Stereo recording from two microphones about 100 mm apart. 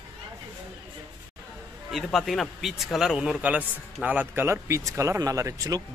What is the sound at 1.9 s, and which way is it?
Speech, centre (ahead or behind).